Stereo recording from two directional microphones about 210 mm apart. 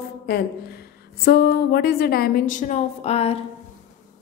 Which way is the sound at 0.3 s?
50° left (ahead or behind).